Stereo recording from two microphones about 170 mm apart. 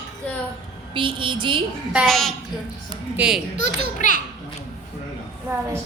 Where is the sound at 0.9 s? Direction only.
30° right (ahead or behind).